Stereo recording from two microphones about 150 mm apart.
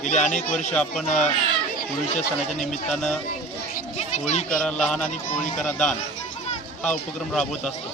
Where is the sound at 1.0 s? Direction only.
50° left (ahead or behind).